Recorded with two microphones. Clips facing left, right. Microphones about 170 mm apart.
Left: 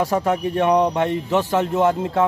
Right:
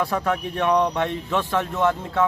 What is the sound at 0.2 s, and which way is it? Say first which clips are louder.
Speech: left 4 dB; 25° left (ahead or behind).